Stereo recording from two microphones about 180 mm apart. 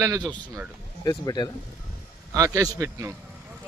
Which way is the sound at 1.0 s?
25° left (ahead or behind).